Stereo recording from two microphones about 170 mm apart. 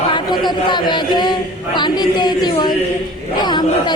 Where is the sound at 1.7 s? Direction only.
25° left (ahead or behind).